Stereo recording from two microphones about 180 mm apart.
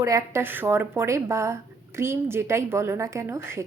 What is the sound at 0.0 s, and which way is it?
A woman's voice, 20° right (ahead or behind).